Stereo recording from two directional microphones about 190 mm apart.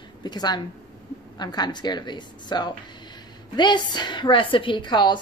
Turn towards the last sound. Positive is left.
turn(degrees=25)  # may be behind; listen again after turning